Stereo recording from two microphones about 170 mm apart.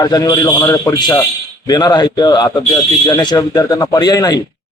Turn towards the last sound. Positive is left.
turn(degrees=20)  # may be behind; listen again after turning